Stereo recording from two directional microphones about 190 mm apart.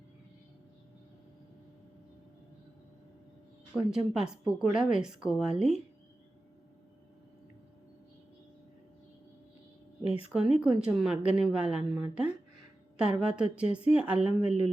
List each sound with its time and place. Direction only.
3.8 s speech: 5° right (ahead or behind)
10.0 s speech: 30° left (ahead or behind)
10.6 s speech: 5° right (ahead or behind)